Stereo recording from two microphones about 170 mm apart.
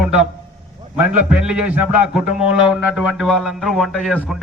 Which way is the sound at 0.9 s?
5° right (ahead or behind).